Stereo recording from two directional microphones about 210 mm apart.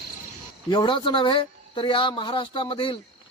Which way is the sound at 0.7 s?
25° left (ahead or behind).